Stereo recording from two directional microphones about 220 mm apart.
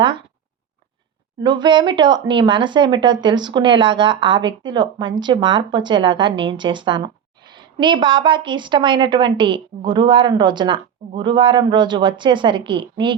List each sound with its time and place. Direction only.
1.4 s speech: 20° right (ahead or behind)